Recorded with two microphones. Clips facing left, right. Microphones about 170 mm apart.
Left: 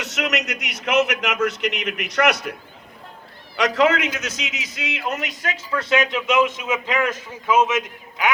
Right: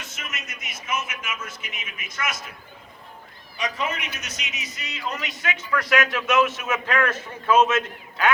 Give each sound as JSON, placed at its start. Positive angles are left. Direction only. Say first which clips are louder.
{"t": 0.0, "sound": "a man's voice", "louder": "left 14 dB", "side_deg": 75}
{"t": 3.6, "sound": "a man's voice", "louder": "left 10 dB", "side_deg": 90}
{"t": 5.0, "sound": "speech", "louder": "left 2 dB", "side_deg": 45}
{"t": 5.7, "sound": "a man's voice", "louder": "left 2 dB", "side_deg": 20}